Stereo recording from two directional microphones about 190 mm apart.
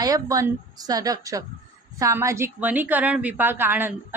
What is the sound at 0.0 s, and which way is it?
A woman's voice, 20° right (ahead or behind).